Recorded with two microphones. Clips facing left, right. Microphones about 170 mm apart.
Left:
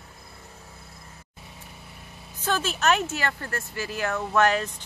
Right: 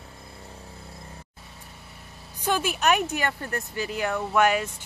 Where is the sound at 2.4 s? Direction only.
15° right (ahead or behind).